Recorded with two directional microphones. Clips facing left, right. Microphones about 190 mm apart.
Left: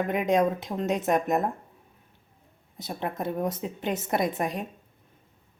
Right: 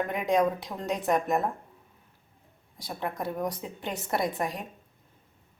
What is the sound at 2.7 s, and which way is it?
A woman's voice, 20° left (ahead or behind).